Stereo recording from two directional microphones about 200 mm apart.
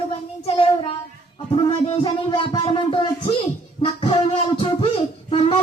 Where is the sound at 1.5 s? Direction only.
30° left (ahead or behind).